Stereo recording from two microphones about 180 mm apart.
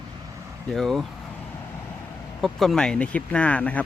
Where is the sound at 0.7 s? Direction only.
Centre (ahead or behind).